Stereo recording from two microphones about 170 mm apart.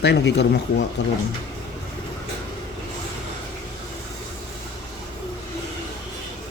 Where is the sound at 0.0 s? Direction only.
85° left.